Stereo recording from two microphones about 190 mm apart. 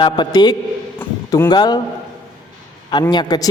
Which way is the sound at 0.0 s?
20° left (ahead or behind).